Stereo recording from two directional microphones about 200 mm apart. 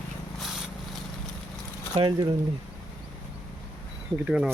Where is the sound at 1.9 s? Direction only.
25° right (ahead or behind).